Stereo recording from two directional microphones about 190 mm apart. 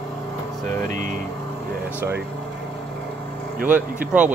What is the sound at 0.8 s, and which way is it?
Speech, 40° right (ahead or behind).